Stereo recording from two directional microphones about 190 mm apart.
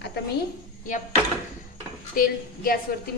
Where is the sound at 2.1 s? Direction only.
50° left (ahead or behind).